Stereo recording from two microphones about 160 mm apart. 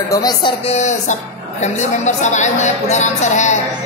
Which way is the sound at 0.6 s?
45° left (ahead or behind).